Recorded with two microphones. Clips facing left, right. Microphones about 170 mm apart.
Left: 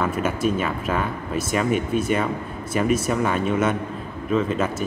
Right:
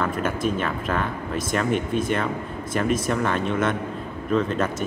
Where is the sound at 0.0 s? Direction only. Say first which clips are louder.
Left 2 dB; 5° left (ahead or behind).